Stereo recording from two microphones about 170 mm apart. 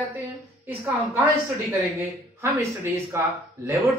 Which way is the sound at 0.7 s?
15° right (ahead or behind).